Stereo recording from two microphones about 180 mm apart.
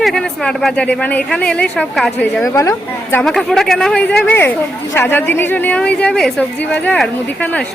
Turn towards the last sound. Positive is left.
turn(degrees=10)  # may be behind; listen again after turning